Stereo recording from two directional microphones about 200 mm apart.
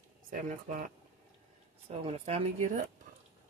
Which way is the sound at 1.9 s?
30° right (ahead or behind).